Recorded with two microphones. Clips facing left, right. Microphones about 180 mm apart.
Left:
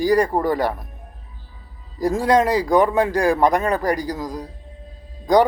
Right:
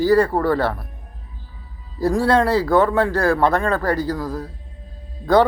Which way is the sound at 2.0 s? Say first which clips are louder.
Even; 15° left (ahead or behind).